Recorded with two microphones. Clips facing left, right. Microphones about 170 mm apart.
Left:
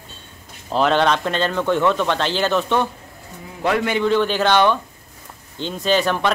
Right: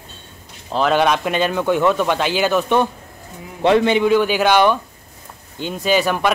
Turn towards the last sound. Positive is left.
turn(degrees=-10)  # may be behind; listen again after turning